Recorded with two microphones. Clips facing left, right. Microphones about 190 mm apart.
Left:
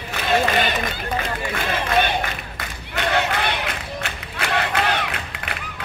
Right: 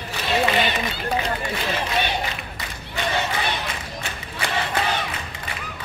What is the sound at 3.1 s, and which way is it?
Crowd, 65° left (ahead or behind).